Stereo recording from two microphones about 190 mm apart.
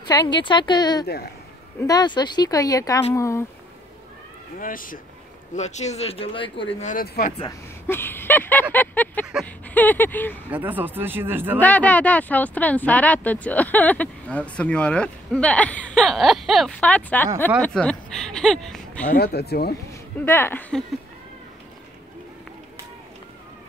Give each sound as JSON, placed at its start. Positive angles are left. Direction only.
{"t": 0.0, "sound": "speech", "side_deg": 25}
{"t": 4.6, "sound": "speech", "side_deg": 45}
{"t": 6.9, "sound": "speech", "side_deg": 45}
{"t": 7.8, "sound": "a sound", "side_deg": 10}
{"t": 9.8, "sound": "speech", "side_deg": 10}
{"t": 10.5, "sound": "speech", "side_deg": -10}
{"t": 11.6, "sound": "speech", "side_deg": 10}
{"t": 19.0, "sound": "speech", "side_deg": 55}
{"t": 19.9, "sound": "speech", "side_deg": 15}